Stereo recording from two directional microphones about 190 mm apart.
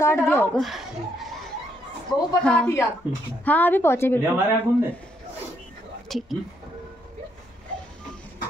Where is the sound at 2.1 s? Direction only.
20° left (ahead or behind).